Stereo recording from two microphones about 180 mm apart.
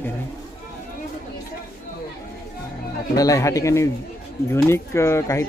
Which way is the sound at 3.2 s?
20° left (ahead or behind).